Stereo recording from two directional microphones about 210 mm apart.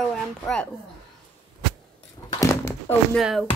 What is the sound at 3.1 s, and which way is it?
Speech, centre (ahead or behind).